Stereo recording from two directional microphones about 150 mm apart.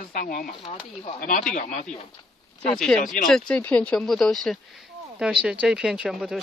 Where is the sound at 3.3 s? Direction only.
5° left (ahead or behind).